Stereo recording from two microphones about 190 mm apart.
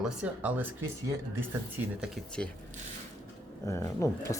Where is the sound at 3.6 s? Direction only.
15° left (ahead or behind).